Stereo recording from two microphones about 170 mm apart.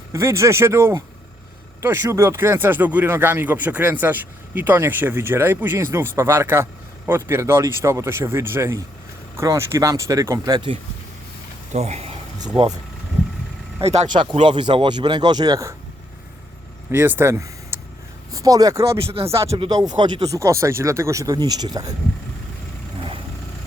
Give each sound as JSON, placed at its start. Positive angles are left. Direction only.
{"t": 0.1, "sound": "speech", "side_deg": -15}
{"t": 11.7, "sound": "speech", "side_deg": -40}
{"t": 13.8, "sound": "speech", "side_deg": -40}
{"t": 14.1, "sound": "speech", "side_deg": -25}
{"t": 16.9, "sound": "speech", "side_deg": -10}
{"t": 18.9, "sound": "speech", "side_deg": -35}
{"t": 19.3, "sound": "speech", "side_deg": -15}